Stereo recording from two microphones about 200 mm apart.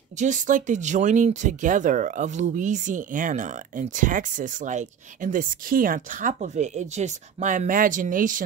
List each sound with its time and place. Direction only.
0.2 s speech: 40° right (ahead or behind)